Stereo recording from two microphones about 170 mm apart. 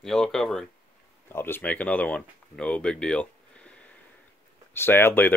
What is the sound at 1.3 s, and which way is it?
Speech, 15° left (ahead or behind).